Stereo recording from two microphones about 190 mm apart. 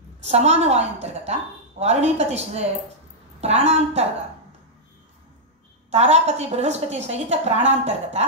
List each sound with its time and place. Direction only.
0.2 s a woman's voice: 35° right (ahead or behind)
5.9 s a woman's voice: 35° right (ahead or behind)